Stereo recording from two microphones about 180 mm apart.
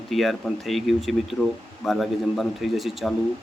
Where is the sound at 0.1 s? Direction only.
Centre (ahead or behind).